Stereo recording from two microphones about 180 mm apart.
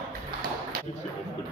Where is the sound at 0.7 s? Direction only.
50° right (ahead or behind).